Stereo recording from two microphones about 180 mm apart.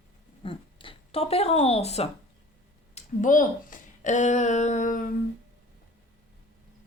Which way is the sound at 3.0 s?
45° left (ahead or behind).